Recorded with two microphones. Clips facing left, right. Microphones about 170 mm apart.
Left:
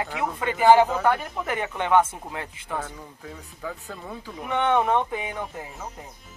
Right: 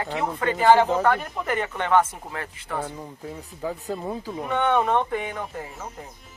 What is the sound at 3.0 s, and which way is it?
Speech, 30° right (ahead or behind).